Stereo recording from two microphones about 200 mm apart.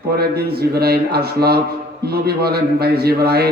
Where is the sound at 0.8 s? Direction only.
50° right (ahead or behind).